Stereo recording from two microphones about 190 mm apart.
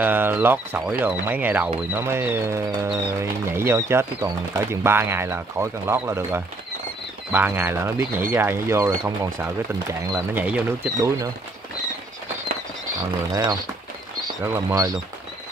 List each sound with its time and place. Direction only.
0.0 s speech: 10° right (ahead or behind)
13.3 s speech: 20° right (ahead or behind)